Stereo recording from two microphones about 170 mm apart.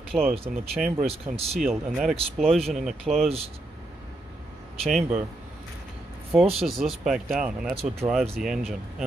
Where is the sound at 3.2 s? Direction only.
35° right (ahead or behind).